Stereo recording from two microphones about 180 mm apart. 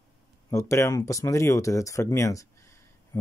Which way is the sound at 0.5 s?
15° left (ahead or behind).